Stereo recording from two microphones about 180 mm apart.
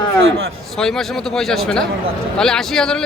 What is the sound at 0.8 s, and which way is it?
Speech, 5° left (ahead or behind).